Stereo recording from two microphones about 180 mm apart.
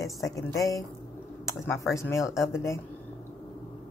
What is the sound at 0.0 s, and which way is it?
A woman's voice, 15° left (ahead or behind).